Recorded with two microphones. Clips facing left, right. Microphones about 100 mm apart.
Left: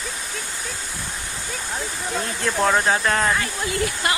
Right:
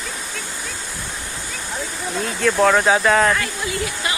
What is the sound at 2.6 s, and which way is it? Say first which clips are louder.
Speech: right 3 dB; 5° left (ahead or behind).